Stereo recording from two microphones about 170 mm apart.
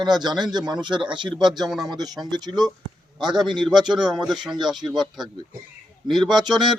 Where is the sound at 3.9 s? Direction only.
Centre (ahead or behind).